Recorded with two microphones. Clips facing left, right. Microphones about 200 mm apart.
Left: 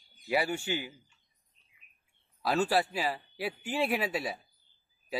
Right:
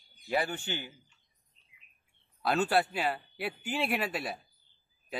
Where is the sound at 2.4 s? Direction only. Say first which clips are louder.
Even; centre (ahead or behind).